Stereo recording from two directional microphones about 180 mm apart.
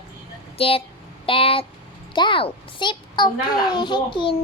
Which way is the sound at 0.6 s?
30° left (ahead or behind).